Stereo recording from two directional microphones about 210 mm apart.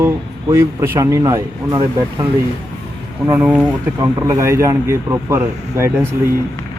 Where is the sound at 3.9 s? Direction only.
15° right (ahead or behind).